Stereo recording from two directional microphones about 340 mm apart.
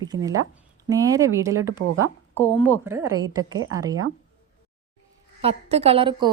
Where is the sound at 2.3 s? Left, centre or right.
Centre.